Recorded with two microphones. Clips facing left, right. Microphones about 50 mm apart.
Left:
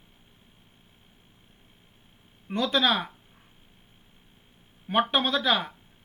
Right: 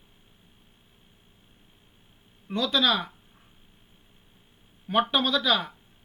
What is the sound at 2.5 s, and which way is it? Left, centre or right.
Speech, centre.